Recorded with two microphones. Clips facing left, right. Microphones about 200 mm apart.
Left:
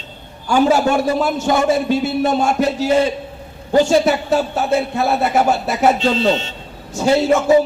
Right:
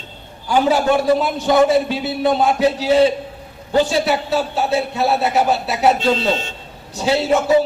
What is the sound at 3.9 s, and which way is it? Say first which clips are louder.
A man's voice: left 4 dB; 45° left (ahead or behind).